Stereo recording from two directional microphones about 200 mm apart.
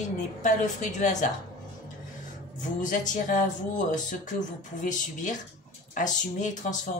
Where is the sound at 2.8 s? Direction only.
40° left (ahead or behind).